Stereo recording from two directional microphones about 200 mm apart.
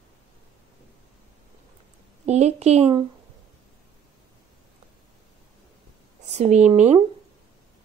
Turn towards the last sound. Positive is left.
turn(degrees=-35)  # may be behind; listen again after turning